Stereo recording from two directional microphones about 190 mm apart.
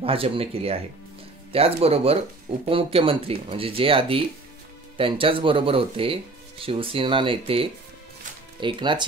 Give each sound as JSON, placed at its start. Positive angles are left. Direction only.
{"t": 0.0, "sound": "speech", "side_deg": -30}